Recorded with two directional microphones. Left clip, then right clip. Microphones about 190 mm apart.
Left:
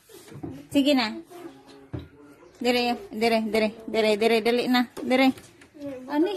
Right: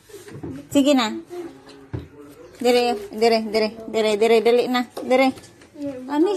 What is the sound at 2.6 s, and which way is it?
Speech, 5° left (ahead or behind).